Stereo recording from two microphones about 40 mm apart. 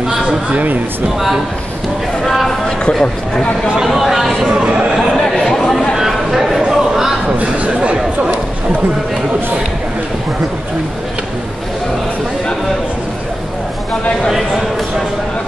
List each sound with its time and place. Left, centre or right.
2.9 s speech: centre
3.8 s speech: centre
4.9 s chatter: centre
5.9 s a sound: centre
7.3 s speech: right